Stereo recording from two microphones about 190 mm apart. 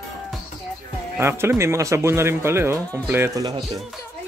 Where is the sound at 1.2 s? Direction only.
15° right (ahead or behind).